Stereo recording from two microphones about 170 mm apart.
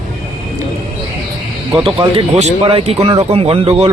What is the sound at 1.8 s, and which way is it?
Speech, 30° right (ahead or behind).